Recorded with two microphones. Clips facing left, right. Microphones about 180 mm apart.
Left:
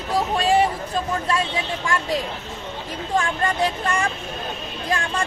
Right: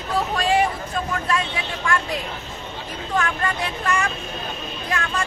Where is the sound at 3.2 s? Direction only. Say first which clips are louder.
Left 3 dB; 30° left (ahead or behind).